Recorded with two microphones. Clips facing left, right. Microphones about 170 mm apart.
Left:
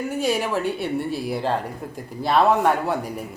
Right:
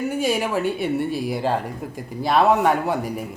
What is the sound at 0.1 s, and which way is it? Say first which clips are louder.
Speech: left 2 dB; centre (ahead or behind).